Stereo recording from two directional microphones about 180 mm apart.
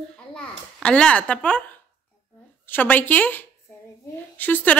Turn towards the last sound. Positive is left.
turn(degrees=10)  # may be behind; listen again after turning